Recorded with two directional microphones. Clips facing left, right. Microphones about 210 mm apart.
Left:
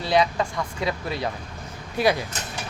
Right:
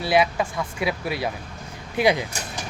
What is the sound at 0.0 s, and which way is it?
Speech, 10° right (ahead or behind).